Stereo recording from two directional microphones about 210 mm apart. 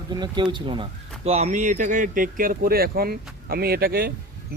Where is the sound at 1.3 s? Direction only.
35° right (ahead or behind).